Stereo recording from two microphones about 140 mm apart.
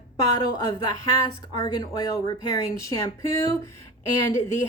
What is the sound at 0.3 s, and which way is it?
Speech, 30° left (ahead or behind).